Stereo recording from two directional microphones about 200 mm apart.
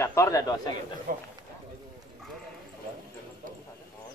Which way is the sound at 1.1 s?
45° right (ahead or behind).